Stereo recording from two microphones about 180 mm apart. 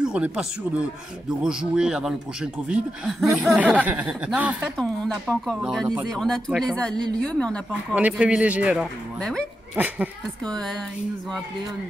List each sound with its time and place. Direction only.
0.0 s speech: 5° right (ahead or behind)
4.7 s speech: 5° left (ahead or behind)
7.9 s a man's voice: 5° right (ahead or behind)
10.4 s speech: 5° left (ahead or behind)